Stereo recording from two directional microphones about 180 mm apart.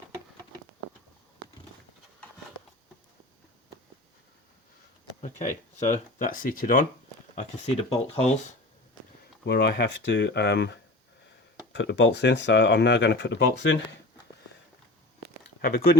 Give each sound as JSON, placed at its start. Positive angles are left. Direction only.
{"t": 5.2, "sound": "speech", "side_deg": 45}
{"t": 7.3, "sound": "speech", "side_deg": 40}
{"t": 9.5, "sound": "speech", "side_deg": 65}
{"t": 11.7, "sound": "speech", "side_deg": 90}